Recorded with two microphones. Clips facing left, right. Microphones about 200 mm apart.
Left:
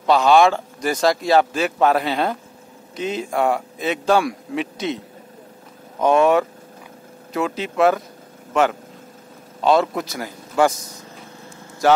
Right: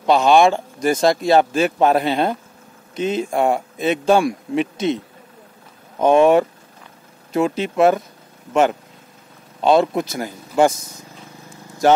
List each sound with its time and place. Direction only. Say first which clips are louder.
0.0 s speech: right 1 dB; 20° right (ahead or behind)
5.9 s speech: right 3 dB; 25° right (ahead or behind)
9.6 s a man's voice: right 2 dB; 20° right (ahead or behind)